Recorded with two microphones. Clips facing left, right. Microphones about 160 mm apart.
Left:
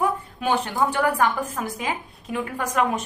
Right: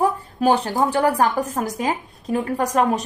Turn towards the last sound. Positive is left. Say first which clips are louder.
# right 4 dB
turn(degrees=-35)  # may be behind; listen again after turning